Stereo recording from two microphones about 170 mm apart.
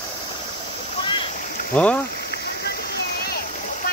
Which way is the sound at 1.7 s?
10° left (ahead or behind).